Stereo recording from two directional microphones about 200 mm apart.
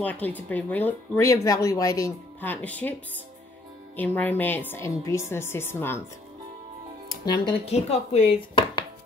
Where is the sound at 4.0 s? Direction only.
10° left (ahead or behind).